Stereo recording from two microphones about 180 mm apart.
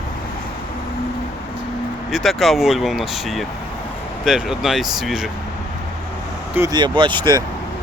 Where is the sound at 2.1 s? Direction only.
Centre (ahead or behind).